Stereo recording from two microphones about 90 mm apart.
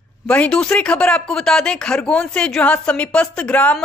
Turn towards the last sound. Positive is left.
turn(degrees=15)  # may be behind; listen again after turning